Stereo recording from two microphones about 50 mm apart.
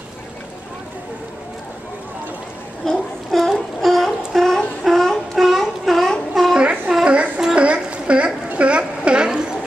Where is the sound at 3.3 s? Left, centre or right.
Centre.